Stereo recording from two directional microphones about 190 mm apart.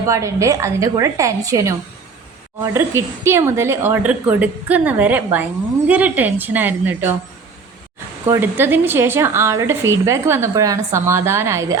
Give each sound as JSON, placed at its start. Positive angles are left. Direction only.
{"t": 0.0, "sound": "a woman's voice", "side_deg": -15}
{"t": 8.3, "sound": "a woman's voice", "side_deg": -10}